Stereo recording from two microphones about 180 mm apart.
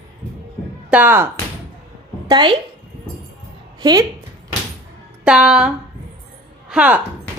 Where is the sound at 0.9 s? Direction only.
10° right (ahead or behind).